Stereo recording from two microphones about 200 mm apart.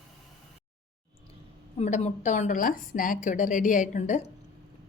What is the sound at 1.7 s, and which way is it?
A woman's voice, 35° left (ahead or behind).